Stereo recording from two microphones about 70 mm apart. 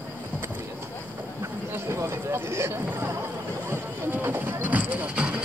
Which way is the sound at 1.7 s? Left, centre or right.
Right.